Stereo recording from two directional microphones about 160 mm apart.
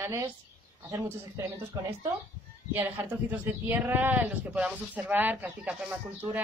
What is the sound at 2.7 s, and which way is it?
Speech, 10° right (ahead or behind).